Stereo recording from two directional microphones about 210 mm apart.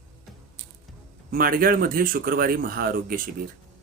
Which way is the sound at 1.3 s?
45° right (ahead or behind).